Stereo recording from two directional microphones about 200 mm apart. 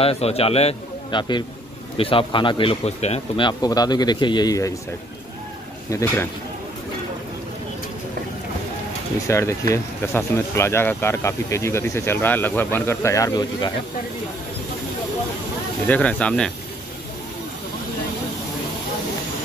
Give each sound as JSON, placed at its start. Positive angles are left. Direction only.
{"t": 0.0, "sound": "speech", "side_deg": 30}
{"t": 5.9, "sound": "speech", "side_deg": 15}
{"t": 9.3, "sound": "speech", "side_deg": 15}
{"t": 15.9, "sound": "speech", "side_deg": 5}